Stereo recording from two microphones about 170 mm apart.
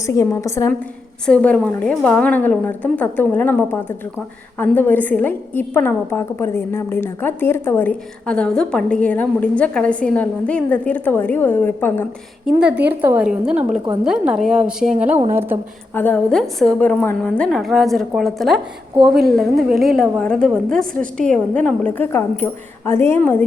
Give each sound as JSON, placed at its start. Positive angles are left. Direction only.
{"t": 0.0, "sound": "a woman's voice", "side_deg": 20}
{"t": 1.3, "sound": "a woman's voice", "side_deg": 5}
{"t": 12.5, "sound": "a woman's voice", "side_deg": -5}
{"t": 16.0, "sound": "a woman's voice", "side_deg": 10}